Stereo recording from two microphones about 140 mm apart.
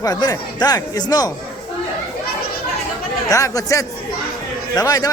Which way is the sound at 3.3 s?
25° left (ahead or behind).